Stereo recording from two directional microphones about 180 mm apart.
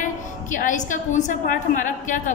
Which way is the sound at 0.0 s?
45° left (ahead or behind).